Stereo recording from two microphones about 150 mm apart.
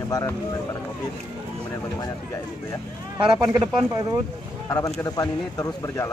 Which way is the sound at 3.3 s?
30° right (ahead or behind).